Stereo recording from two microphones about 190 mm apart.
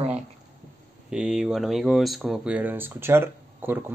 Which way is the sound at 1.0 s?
5° right (ahead or behind).